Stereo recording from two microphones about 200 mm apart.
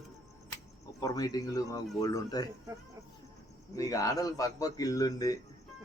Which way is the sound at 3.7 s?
15° left (ahead or behind).